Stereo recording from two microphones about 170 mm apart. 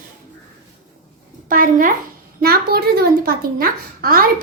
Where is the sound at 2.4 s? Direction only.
65° right (ahead or behind).